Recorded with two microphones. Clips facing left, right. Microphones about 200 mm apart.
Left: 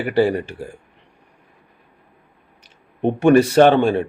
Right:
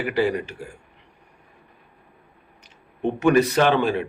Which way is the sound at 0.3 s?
35° left (ahead or behind).